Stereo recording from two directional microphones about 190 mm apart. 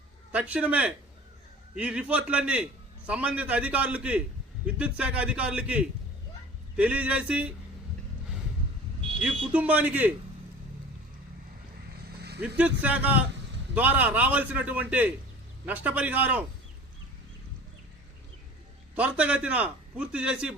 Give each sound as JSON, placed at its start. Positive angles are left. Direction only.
{"t": 0.3, "sound": "a man's voice", "side_deg": -10}
{"t": 9.2, "sound": "a man's voice", "side_deg": -5}
{"t": 12.0, "sound": "vehicle", "side_deg": -60}
{"t": 12.5, "sound": "a man's voice", "side_deg": -5}
{"t": 18.9, "sound": "a man's voice", "side_deg": -5}